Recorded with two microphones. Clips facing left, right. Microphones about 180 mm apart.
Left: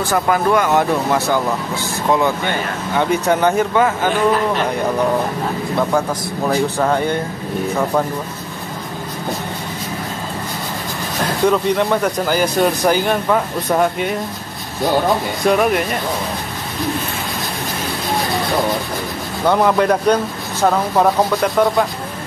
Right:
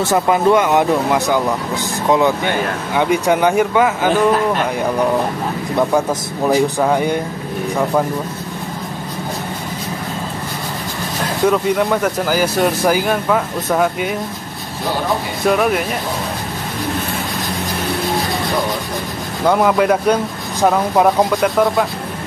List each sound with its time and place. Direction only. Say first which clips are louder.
0.0 s speech: right 3 dB; 20° right (ahead or behind)
5.8 s speech: right 3 dB; 15° right (ahead or behind)
11.4 s speech: right 1 dB; 5° right (ahead or behind)
15.4 s speech: even; centre (ahead or behind)
19.4 s speech: right 1 dB; 5° right (ahead or behind)